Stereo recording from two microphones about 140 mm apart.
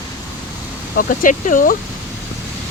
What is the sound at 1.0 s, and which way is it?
Speech, 75° left (ahead or behind).